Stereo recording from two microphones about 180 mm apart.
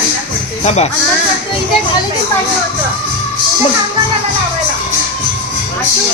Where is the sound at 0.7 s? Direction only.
35° left (ahead or behind).